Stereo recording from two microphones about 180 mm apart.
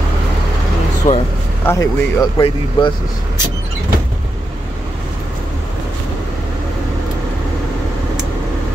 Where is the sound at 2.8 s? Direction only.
30° left (ahead or behind).